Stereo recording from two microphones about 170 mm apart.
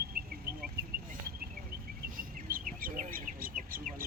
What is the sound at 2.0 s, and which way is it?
Bird, 55° right (ahead or behind).